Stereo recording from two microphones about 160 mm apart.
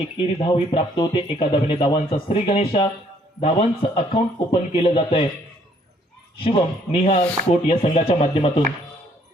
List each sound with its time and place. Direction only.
0.2 s speech: 35° left (ahead or behind)
6.4 s speech: 35° left (ahead or behind)